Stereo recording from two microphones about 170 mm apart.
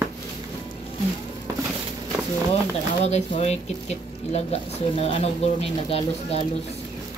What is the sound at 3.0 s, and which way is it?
Speech, 40° left (ahead or behind).